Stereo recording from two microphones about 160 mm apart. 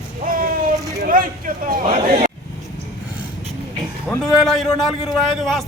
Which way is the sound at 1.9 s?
40° right (ahead or behind).